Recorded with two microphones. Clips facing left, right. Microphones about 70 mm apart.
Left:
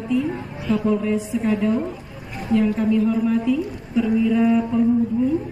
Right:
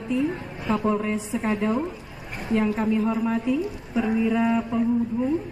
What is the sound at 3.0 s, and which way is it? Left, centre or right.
A woman's voice, right.